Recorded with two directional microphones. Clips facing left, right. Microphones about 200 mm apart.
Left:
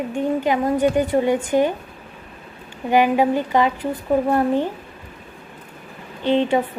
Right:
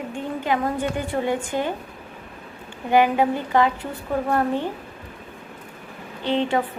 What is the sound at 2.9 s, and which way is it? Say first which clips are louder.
A woman's voice: left 2 dB; 15° left (ahead or behind).